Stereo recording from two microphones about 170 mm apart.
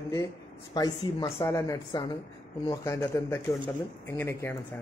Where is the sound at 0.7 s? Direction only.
25° left (ahead or behind).